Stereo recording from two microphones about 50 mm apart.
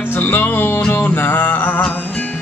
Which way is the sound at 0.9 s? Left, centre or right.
Left.